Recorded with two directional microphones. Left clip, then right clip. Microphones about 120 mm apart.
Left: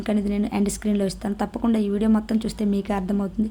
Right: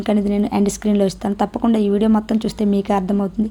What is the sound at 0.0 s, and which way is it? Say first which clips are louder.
A woman's voice: right 6 dB; 25° right (ahead or behind).